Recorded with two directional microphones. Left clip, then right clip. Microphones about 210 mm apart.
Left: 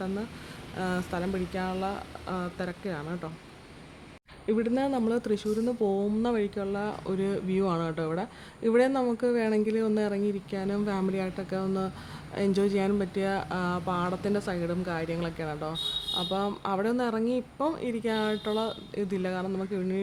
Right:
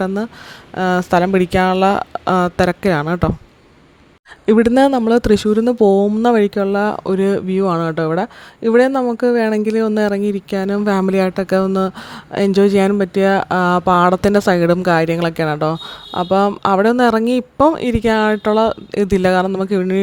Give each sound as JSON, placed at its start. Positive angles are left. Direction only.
{"t": 0.8, "sound": "speech", "side_deg": -45}
{"t": 4.4, "sound": "speech", "side_deg": -50}